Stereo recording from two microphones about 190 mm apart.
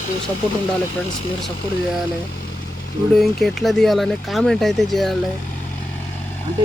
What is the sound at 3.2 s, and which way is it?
Speech, centre (ahead or behind).